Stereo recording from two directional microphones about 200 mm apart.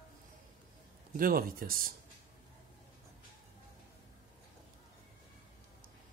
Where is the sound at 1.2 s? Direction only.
45° right (ahead or behind).